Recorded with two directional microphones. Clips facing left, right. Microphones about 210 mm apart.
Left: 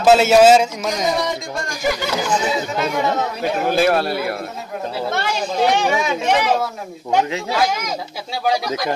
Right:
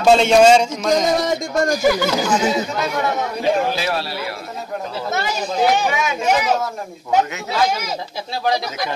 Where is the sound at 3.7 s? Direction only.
50° left (ahead or behind).